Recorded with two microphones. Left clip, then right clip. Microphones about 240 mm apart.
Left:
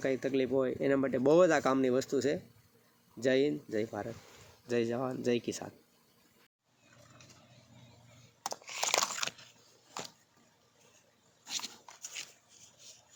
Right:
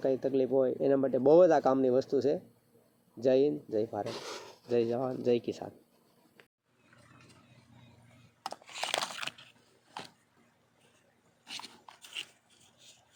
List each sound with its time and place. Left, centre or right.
0.0 s speech: left
3.2 s speech: left
5.4 s speech: centre
8.4 s a sound: centre
11.4 s dog: centre